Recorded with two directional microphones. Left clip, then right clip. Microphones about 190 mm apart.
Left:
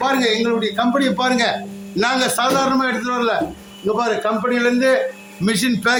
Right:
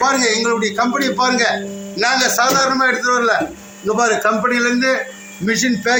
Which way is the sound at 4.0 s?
10° left (ahead or behind).